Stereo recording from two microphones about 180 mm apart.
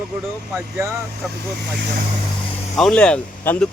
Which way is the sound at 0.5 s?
15° right (ahead or behind).